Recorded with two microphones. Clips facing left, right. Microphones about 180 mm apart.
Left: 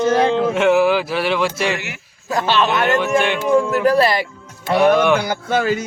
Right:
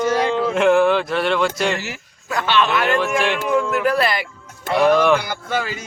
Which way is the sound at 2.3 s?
40° left (ahead or behind).